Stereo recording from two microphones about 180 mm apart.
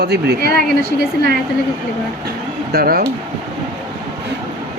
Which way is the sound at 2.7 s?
55° right (ahead or behind).